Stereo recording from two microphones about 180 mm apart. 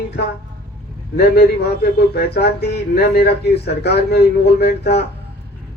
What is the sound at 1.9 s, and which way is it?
Speech, 65° left (ahead or behind).